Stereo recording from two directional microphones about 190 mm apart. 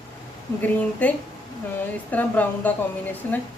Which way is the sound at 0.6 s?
10° left (ahead or behind).